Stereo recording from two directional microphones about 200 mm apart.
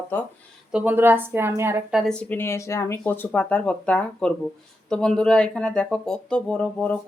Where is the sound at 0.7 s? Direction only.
10° right (ahead or behind).